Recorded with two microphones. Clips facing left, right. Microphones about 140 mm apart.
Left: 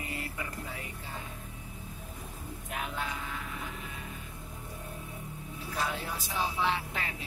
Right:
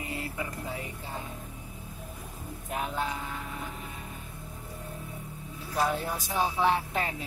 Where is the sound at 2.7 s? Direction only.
35° right (ahead or behind).